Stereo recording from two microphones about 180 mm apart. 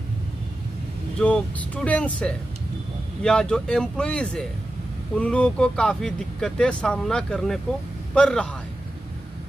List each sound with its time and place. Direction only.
1.2 s speech: 5° left (ahead or behind)